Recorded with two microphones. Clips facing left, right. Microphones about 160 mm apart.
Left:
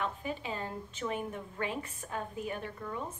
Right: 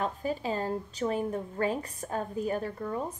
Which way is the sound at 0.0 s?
40° right (ahead or behind).